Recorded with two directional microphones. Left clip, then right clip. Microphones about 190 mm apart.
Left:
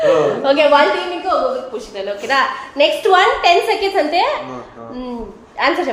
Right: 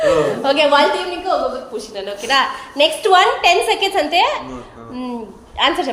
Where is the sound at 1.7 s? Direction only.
30° right (ahead or behind).